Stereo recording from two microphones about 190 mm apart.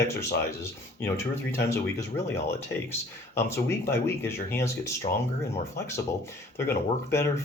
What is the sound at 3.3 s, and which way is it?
Speech, 15° left (ahead or behind).